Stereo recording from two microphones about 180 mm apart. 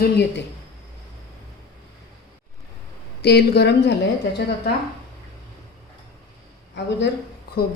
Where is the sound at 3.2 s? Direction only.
65° left (ahead or behind).